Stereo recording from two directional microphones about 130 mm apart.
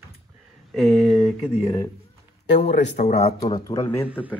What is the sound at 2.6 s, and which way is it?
Speech, 60° left (ahead or behind).